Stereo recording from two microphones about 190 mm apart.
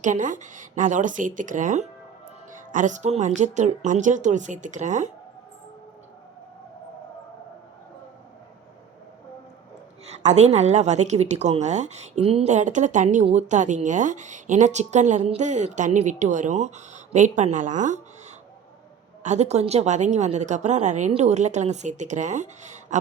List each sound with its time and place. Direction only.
0.0 s a woman's voice: 40° right (ahead or behind)
10.1 s a woman's voice: 35° right (ahead or behind)
19.2 s a woman's voice: 35° right (ahead or behind)